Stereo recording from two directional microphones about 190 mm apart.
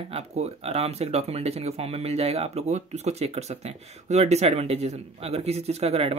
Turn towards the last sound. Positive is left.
turn(degrees=-30)  # may be behind; listen again after turning